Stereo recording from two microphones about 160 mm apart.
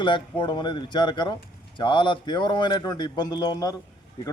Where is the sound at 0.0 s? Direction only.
30° left (ahead or behind).